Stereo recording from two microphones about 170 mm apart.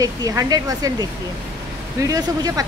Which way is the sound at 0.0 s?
20° right (ahead or behind).